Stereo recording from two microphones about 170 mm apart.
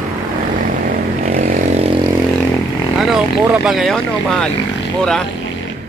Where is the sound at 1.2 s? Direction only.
40° right (ahead or behind).